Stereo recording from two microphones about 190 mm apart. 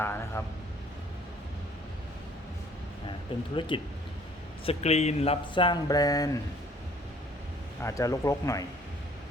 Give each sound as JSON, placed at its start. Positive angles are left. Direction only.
{"t": 0.0, "sound": "speech", "side_deg": 10}
{"t": 3.5, "sound": "speech", "side_deg": 25}
{"t": 7.8, "sound": "speech", "side_deg": 15}